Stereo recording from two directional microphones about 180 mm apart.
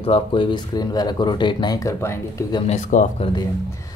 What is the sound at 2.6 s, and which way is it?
Speech, 40° left (ahead or behind).